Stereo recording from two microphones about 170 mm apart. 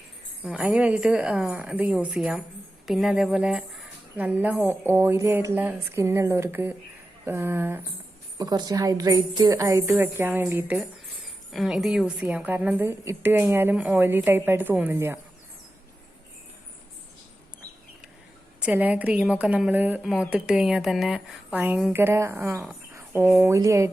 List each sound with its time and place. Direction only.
0.4 s a woman's voice: 5° right (ahead or behind)
11.5 s a woman's voice: centre (ahead or behind)
18.6 s a woman's voice: 10° right (ahead or behind)